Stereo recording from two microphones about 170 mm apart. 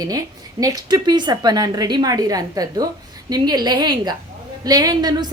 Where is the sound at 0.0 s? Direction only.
20° right (ahead or behind).